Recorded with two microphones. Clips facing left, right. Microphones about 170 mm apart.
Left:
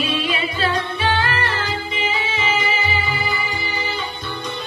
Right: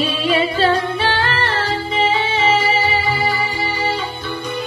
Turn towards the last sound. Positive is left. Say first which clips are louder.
# right 5 dB
turn(degrees=-30)  # may be behind; listen again after turning